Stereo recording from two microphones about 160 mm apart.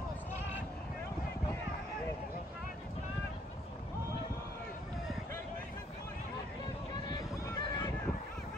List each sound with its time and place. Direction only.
7.1 s horse: 25° left (ahead or behind)